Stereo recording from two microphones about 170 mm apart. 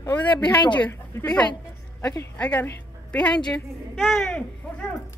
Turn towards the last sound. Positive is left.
turn(degrees=5)  # may be behind; listen again after turning